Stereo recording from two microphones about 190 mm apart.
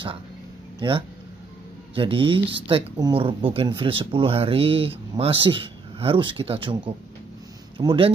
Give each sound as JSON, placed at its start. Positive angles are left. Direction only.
{"t": 0.7, "sound": "speech", "side_deg": -25}